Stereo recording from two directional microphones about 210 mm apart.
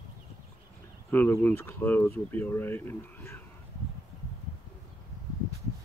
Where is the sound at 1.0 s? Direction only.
10° left (ahead or behind).